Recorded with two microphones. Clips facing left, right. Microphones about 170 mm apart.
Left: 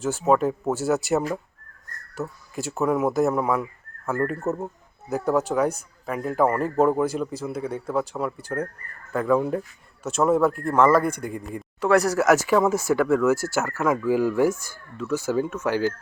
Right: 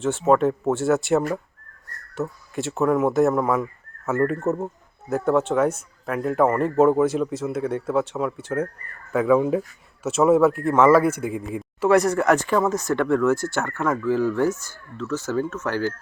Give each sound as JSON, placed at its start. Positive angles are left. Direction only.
{"t": 0.0, "sound": "speech", "side_deg": 0}